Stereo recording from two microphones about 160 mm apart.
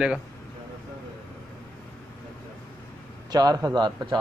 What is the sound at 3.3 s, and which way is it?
Speech, 25° right (ahead or behind).